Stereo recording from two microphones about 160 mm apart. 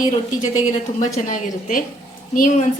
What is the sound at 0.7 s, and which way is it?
A woman's voice, 50° left (ahead or behind).